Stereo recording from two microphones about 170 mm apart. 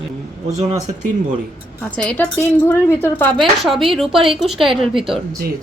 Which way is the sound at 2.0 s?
5° left (ahead or behind).